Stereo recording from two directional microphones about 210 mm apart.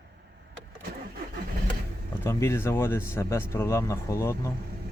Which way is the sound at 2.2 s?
15° left (ahead or behind).